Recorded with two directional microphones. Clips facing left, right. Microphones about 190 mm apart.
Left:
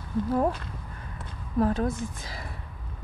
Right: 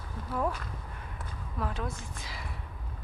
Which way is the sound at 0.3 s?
35° left (ahead or behind).